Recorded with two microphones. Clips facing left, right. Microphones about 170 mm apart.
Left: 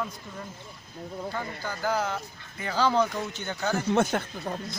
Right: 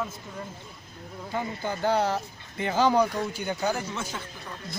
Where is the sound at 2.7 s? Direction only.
15° right (ahead or behind).